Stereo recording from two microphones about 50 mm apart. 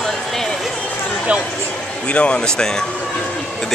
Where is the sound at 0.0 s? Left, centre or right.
Centre.